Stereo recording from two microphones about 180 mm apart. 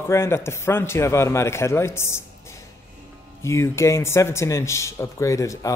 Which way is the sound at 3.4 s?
15° left (ahead or behind).